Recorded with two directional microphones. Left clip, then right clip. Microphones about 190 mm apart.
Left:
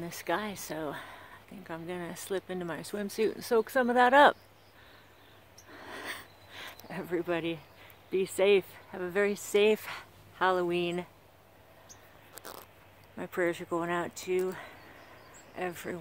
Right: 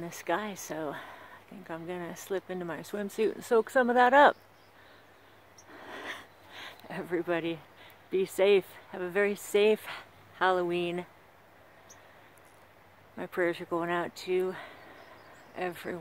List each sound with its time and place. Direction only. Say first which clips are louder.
0.0 s a woman's voice: right 1 dB; centre (ahead or behind)
5.7 s speech: even; centre (ahead or behind)
13.2 s a woman's voice: right 1 dB; centre (ahead or behind)